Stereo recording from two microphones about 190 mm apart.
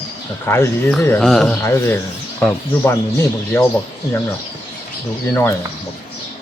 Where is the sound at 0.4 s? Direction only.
15° left (ahead or behind).